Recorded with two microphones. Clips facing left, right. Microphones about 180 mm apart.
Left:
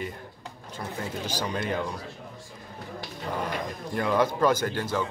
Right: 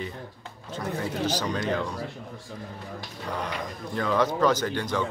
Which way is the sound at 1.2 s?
10° left (ahead or behind).